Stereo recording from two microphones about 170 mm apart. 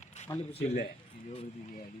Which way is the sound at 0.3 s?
15° left (ahead or behind).